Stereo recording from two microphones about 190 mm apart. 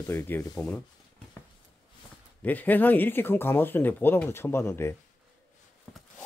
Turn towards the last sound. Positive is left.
turn(degrees=15)  # may be behind; listen again after turning